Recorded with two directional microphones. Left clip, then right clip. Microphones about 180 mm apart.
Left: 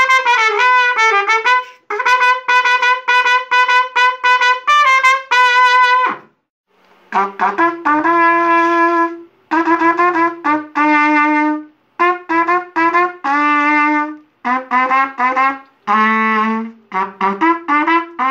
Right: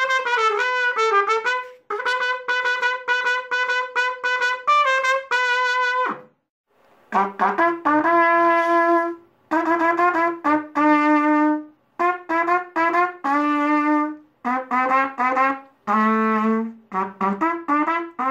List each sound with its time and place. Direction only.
0.0 s trumpet: 55° right (ahead or behind)
16.9 s music: 60° right (ahead or behind)